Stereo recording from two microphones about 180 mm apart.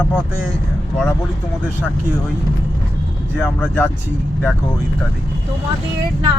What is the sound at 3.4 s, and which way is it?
Speech, 10° left (ahead or behind).